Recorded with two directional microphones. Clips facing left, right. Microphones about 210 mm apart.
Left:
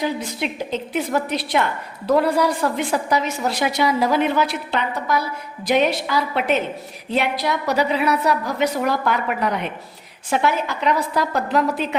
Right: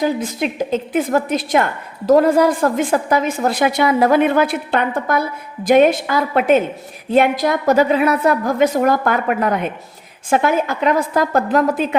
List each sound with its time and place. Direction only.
0.0 s a woman's voice: 45° right (ahead or behind)